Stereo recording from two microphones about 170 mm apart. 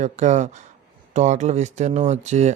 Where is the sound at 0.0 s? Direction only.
45° right (ahead or behind).